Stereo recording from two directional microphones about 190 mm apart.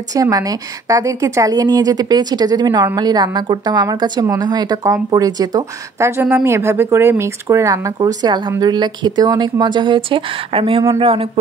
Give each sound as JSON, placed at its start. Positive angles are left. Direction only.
{"t": 0.1, "sound": "a woman's voice", "side_deg": -20}